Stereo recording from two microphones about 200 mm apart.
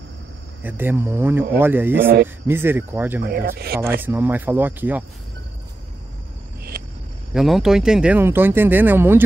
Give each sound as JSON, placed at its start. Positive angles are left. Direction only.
{"t": 0.7, "sound": "speech", "side_deg": -10}
{"t": 3.2, "sound": "speech", "side_deg": -45}
{"t": 4.0, "sound": "speech", "side_deg": -10}
{"t": 6.7, "sound": "a sound", "side_deg": -50}
{"t": 7.3, "sound": "speech", "side_deg": 0}